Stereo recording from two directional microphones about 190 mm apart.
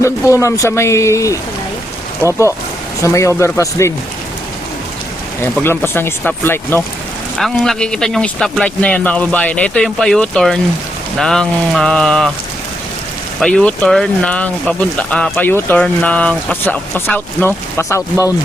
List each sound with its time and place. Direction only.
0.4 s speech: 15° left (ahead or behind)
5.6 s speech: 10° left (ahead or behind)
7.3 s speech: centre (ahead or behind)
13.4 s speech: 5° left (ahead or behind)